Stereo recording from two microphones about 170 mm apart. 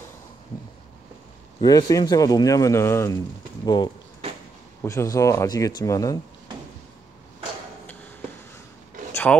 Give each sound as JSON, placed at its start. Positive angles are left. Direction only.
{"t": 1.6, "sound": "speech", "side_deg": 20}
{"t": 7.8, "sound": "a sound", "side_deg": 10}
{"t": 9.1, "sound": "wood", "side_deg": 10}